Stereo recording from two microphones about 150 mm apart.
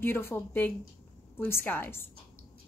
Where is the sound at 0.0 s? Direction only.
15° left (ahead or behind).